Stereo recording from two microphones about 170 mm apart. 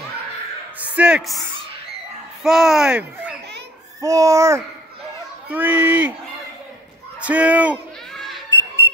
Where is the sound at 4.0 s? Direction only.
20° right (ahead or behind).